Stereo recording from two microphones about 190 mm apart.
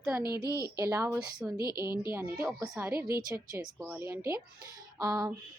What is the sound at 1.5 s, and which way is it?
Speech, 20° left (ahead or behind).